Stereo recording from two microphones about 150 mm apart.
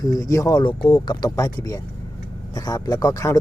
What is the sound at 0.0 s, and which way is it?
Speech, 25° left (ahead or behind).